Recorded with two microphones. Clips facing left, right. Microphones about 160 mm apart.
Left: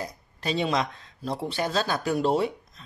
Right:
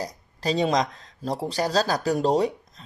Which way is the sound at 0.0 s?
35° right (ahead or behind).